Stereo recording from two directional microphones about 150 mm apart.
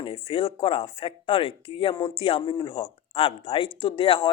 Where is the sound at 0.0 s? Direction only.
35° left (ahead or behind).